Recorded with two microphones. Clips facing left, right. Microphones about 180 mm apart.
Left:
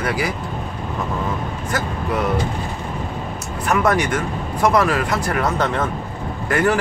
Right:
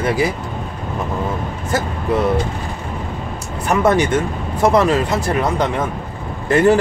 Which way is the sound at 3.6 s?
25° right (ahead or behind).